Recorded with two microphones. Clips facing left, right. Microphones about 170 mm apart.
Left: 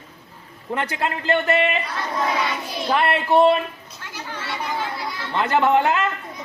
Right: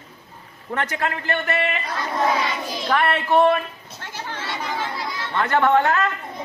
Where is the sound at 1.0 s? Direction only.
20° left (ahead or behind).